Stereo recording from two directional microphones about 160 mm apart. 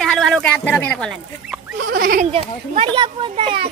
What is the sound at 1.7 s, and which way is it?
Speech, 65° right (ahead or behind).